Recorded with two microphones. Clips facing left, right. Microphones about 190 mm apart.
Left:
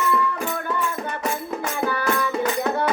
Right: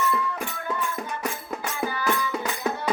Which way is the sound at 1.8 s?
65° left (ahead or behind).